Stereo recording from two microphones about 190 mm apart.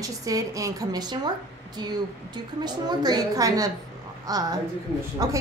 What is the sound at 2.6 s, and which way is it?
A woman's voice, 20° right (ahead or behind).